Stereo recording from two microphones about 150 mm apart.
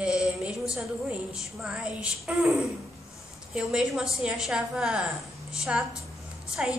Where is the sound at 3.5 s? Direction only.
5° right (ahead or behind).